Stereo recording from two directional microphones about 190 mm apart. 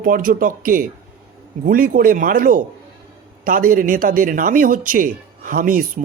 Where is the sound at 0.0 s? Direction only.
45° right (ahead or behind).